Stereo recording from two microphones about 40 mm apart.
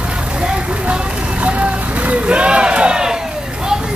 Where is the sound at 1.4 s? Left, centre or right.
Right.